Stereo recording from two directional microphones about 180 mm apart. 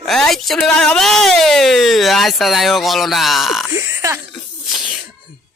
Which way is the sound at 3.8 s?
15° right (ahead or behind).